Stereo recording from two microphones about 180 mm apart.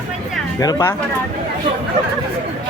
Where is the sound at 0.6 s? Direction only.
20° left (ahead or behind).